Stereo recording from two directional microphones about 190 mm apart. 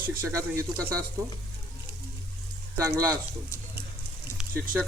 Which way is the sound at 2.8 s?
15° right (ahead or behind).